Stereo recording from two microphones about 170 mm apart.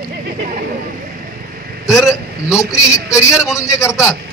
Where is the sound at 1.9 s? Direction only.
Centre (ahead or behind).